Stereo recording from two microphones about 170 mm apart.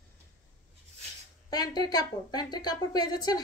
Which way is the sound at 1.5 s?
25° left (ahead or behind).